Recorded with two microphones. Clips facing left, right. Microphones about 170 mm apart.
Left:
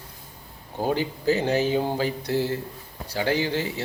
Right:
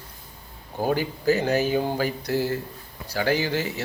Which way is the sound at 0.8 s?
25° left (ahead or behind).